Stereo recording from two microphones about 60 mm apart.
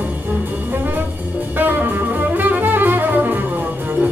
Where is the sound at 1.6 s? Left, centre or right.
Right.